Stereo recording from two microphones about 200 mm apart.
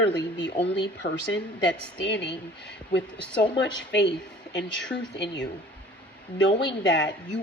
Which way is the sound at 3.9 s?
60° left (ahead or behind).